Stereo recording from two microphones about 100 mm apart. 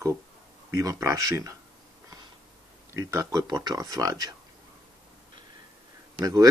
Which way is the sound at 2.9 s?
30° right (ahead or behind).